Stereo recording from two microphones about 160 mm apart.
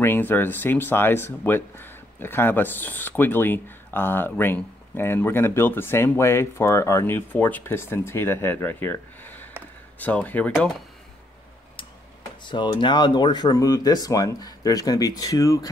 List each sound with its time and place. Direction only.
0.0 s speech: 15° left (ahead or behind)
12.4 s speech: 30° left (ahead or behind)